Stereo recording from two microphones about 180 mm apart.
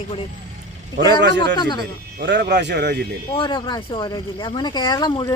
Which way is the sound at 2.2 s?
65° right (ahead or behind).